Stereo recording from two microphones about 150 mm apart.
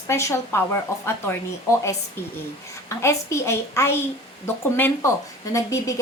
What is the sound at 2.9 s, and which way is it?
A woman's voice, 20° left (ahead or behind).